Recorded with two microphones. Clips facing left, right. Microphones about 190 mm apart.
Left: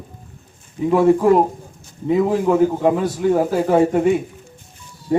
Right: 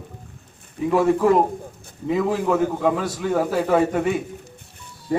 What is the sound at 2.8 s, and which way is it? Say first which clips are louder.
A man's voice: left 4 dB; 35° left (ahead or behind).